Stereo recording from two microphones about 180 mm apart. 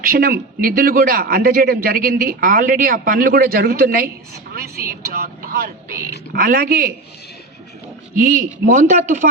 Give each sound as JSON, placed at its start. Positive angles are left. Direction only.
{"t": 0.0, "sound": "a man's voice", "side_deg": -55}
{"t": 8.1, "sound": "speech", "side_deg": -45}